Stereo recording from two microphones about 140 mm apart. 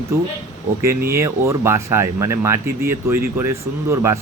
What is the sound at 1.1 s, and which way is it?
Speech, 20° right (ahead or behind).